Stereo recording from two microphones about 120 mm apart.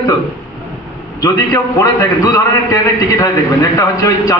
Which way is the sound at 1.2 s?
25° left (ahead or behind).